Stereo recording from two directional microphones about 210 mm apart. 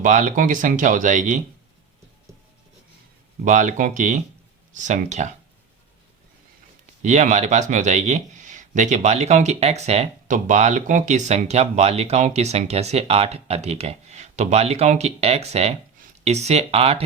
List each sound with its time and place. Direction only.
0.0 s speech: 35° right (ahead or behind)
3.4 s speech: 35° right (ahead or behind)
7.0 s speech: 35° right (ahead or behind)